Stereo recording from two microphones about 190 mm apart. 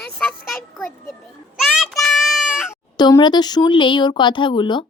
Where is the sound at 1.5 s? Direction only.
Centre (ahead or behind).